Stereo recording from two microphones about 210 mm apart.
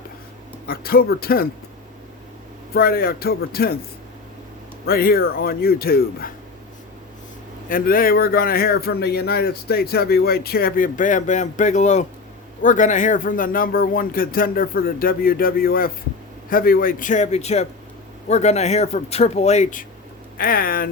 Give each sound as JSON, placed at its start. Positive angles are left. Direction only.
{"t": 0.7, "sound": "speech", "side_deg": 45}
{"t": 2.7, "sound": "speech", "side_deg": 45}
{"t": 4.9, "sound": "speech", "side_deg": 45}
{"t": 7.7, "sound": "speech", "side_deg": 40}
{"t": 20.4, "sound": "speech", "side_deg": 45}